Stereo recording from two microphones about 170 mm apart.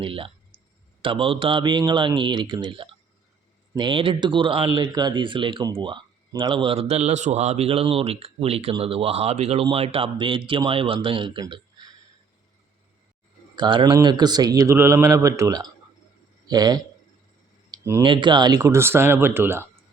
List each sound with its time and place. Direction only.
0.0 s clicking: 30° right (ahead or behind)
1.0 s speech: 30° right (ahead or behind)
13.6 s speech: 30° right (ahead or behind)
17.7 s a sound: 15° right (ahead or behind)
18.0 s speech: 30° right (ahead or behind)